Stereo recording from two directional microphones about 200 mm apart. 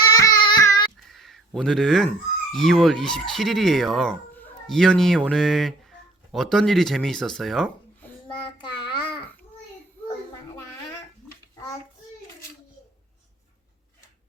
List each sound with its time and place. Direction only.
0.1 s child singing: 20° left (ahead or behind)
0.9 s speech: centre (ahead or behind)
8.9 s babbling: 25° left (ahead or behind)